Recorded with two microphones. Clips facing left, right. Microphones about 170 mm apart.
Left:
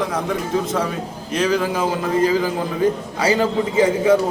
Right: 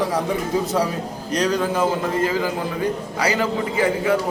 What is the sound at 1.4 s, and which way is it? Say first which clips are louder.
Speech: left 1 dB; 5° left (ahead or behind).